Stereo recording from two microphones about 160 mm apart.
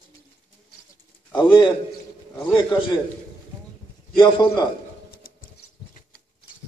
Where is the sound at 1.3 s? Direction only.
30° left (ahead or behind).